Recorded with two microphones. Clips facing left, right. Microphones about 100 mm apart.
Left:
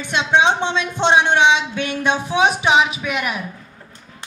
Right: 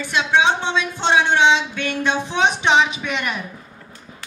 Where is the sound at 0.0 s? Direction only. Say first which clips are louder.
Left 1 dB; 20° left (ahead or behind); by 3.3 s 5° left (ahead or behind).